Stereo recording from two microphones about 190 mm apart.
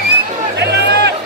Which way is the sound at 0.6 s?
60° right (ahead or behind).